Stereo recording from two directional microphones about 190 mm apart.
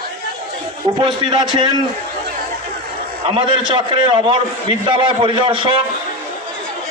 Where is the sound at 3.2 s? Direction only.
25° right (ahead or behind).